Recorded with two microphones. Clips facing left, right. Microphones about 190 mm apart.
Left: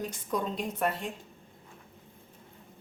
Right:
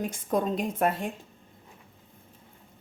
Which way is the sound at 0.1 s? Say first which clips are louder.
Right 5 dB; 50° right (ahead or behind).